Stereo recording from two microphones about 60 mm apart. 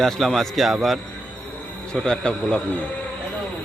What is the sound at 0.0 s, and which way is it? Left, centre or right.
Speech, centre.